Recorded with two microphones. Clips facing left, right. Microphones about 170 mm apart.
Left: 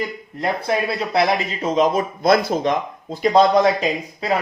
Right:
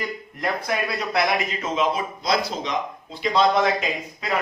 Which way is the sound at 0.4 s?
30° left (ahead or behind).